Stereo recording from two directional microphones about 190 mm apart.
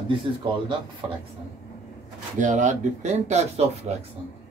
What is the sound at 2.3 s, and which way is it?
Speech, 40° right (ahead or behind).